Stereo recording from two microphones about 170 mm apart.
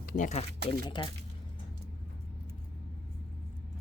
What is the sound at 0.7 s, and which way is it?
Speech, 25° left (ahead or behind).